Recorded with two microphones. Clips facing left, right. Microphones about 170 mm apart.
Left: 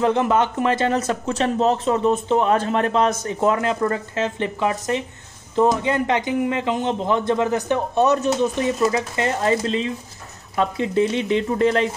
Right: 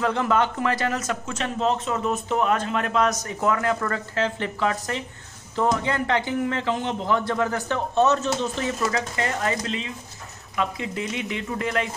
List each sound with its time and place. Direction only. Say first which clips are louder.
0.0 s speech: left 4 dB; 20° left (ahead or behind)